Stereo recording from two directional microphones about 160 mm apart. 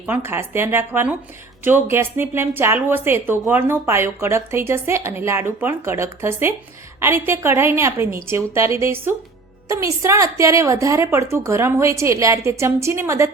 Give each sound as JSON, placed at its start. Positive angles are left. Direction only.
{"t": 0.0, "sound": "a woman's voice", "side_deg": -15}